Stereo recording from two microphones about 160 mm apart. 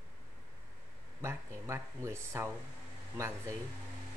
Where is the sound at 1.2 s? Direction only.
15° right (ahead or behind).